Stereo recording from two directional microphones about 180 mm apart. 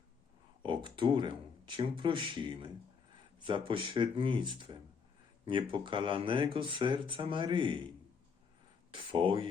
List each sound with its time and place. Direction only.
0.6 s speech: 25° right (ahead or behind)